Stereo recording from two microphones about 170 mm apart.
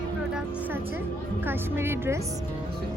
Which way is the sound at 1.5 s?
15° right (ahead or behind).